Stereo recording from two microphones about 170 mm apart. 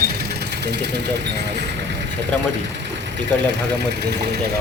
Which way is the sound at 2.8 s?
90° right.